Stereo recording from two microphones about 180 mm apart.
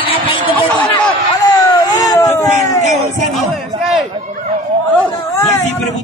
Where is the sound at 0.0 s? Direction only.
30° left (ahead or behind).